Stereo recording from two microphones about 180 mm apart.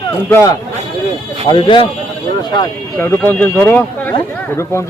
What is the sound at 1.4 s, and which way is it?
Speech, 30° left (ahead or behind).